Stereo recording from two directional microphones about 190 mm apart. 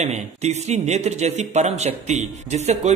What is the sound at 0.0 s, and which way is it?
Speech, 35° right (ahead or behind).